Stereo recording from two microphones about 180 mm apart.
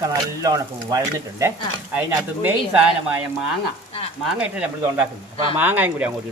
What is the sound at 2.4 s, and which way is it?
Cutlery, 5° right (ahead or behind).